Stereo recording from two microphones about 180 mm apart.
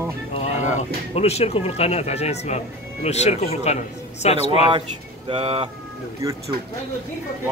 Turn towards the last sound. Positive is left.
turn(degrees=-15)  # may be behind; listen again after turning